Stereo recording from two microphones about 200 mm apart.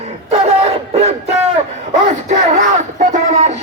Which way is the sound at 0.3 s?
30° right (ahead or behind).